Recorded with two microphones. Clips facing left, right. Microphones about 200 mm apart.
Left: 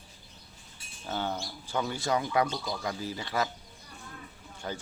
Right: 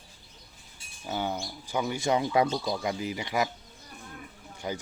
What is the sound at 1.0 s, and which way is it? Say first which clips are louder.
Speech: right 2 dB; 10° right (ahead or behind).